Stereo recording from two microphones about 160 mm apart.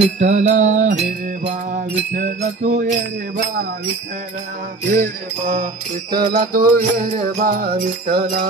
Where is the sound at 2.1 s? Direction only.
55° right (ahead or behind).